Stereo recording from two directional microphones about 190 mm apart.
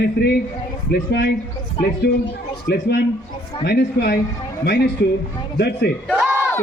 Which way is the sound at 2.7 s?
60° left (ahead or behind).